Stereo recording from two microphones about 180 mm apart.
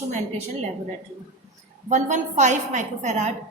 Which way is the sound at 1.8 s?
40° right (ahead or behind).